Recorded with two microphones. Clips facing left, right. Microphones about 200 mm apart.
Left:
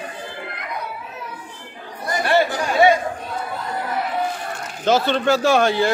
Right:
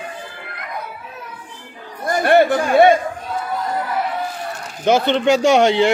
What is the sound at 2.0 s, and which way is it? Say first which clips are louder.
Chatter: right 5 dB; 55° right (ahead or behind).